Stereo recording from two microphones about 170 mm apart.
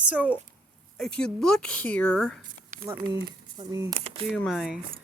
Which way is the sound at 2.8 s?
15° right (ahead or behind).